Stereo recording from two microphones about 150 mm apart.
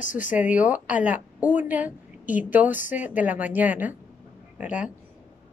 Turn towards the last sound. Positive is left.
turn(degrees=-10)  # may be behind; listen again after turning